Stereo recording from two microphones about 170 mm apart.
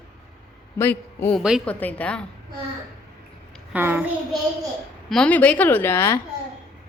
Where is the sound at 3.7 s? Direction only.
10° right (ahead or behind).